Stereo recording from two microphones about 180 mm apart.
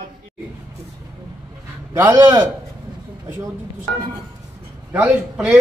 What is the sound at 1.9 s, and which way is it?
Speech, 15° right (ahead or behind).